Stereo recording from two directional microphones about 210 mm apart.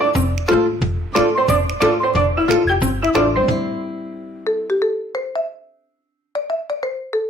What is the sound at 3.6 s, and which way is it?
Music, 20° right (ahead or behind).